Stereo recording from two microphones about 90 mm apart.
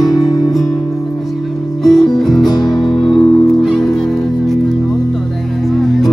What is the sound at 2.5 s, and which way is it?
Music, 50° left (ahead or behind).